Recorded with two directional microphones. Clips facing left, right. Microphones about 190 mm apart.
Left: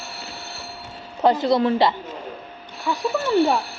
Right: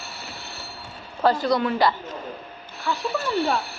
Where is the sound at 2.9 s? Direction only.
15° left (ahead or behind).